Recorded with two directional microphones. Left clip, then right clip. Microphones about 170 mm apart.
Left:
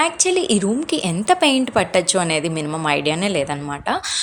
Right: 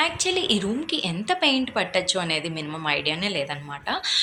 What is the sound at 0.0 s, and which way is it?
A woman's voice, 45° left (ahead or behind).